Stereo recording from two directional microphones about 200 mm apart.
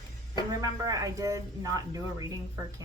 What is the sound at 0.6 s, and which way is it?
Speech, 15° right (ahead or behind).